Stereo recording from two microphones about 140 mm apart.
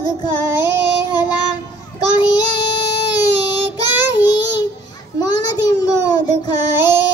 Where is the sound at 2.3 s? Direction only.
30° left (ahead or behind).